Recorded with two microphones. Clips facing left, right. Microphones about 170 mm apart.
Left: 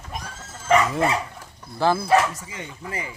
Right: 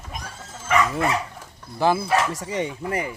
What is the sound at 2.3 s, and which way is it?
Speech, 75° right (ahead or behind).